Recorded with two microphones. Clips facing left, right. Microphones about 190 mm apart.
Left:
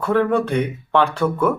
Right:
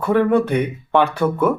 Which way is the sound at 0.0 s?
10° right (ahead or behind).